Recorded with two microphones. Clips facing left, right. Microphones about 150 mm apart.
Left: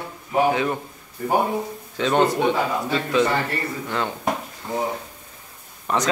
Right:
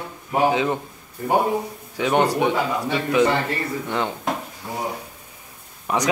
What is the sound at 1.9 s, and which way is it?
A man's voice, 15° right (ahead or behind).